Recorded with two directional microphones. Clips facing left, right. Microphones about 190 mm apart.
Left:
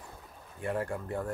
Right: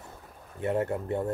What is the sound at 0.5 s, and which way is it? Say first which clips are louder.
Speech: right 5 dB; 25° right (ahead or behind).